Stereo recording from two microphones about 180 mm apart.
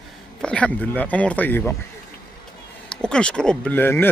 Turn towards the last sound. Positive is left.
turn(degrees=10)  # may be behind; listen again after turning